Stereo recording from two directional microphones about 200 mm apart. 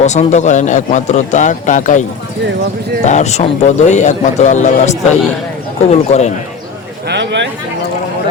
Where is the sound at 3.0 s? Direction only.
35° left (ahead or behind).